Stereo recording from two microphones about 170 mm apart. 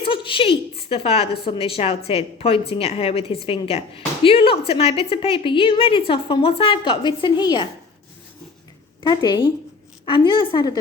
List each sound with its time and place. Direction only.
0.0 s a sound: 30° left (ahead or behind)
0.8 s a woman's voice: 35° left (ahead or behind)
9.0 s a woman's voice: 25° left (ahead or behind)